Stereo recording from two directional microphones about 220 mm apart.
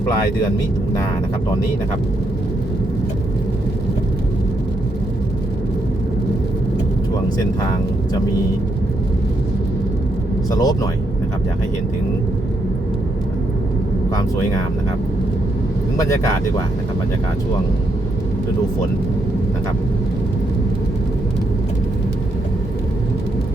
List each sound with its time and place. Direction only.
10.5 s speech: 15° left (ahead or behind)
16.0 s speech: 15° left (ahead or behind)